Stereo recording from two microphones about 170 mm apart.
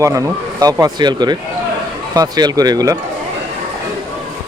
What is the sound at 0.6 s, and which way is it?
Speech, 20° right (ahead or behind).